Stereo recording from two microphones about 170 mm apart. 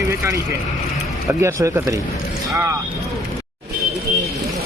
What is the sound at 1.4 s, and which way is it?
Speech, 15° right (ahead or behind).